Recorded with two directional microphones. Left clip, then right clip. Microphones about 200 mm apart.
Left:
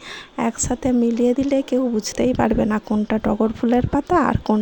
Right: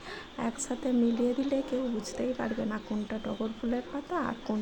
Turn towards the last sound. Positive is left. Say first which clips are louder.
# left 15 dB
turn(degrees=50)  # may be behind; listen again after turning